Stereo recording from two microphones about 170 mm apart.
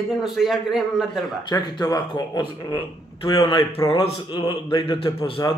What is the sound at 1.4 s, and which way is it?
A man's voice, 20° left (ahead or behind).